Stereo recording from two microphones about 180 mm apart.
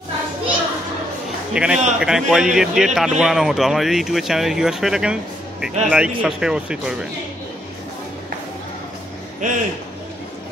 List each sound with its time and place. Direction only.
1.5 s speech: 5° right (ahead or behind)
9.4 s a man's voice: 45° right (ahead or behind)